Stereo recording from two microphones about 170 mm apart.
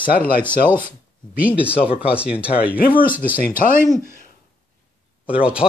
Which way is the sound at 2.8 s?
55° left (ahead or behind).